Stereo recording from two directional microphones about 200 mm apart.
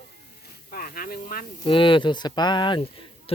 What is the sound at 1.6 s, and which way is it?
Speech, 25° left (ahead or behind).